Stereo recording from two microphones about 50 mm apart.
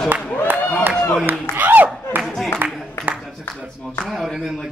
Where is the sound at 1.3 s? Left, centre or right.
Right.